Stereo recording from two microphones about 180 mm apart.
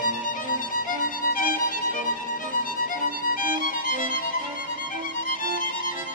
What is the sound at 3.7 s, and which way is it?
Music, 50° left (ahead or behind).